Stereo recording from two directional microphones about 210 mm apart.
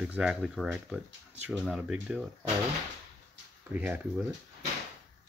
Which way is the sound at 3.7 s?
10° right (ahead or behind).